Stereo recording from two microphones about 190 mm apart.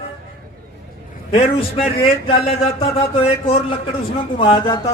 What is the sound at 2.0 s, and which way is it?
Speech, 30° left (ahead or behind).